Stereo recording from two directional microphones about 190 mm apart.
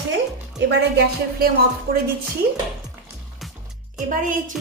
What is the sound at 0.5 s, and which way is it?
A woman's voice, 55° right (ahead or behind).